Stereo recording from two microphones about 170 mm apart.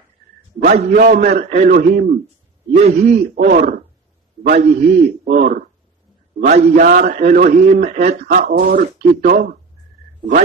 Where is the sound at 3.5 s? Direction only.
55° right (ahead or behind).